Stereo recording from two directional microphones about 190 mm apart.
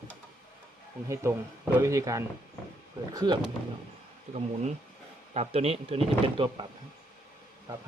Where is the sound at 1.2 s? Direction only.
15° right (ahead or behind).